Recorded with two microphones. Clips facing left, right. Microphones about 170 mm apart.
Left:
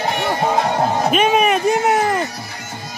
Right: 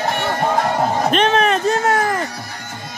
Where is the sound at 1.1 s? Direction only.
10° left (ahead or behind).